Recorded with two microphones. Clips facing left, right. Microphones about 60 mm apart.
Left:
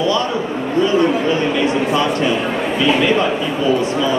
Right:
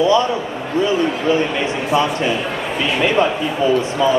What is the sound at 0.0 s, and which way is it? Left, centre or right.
Speech, right.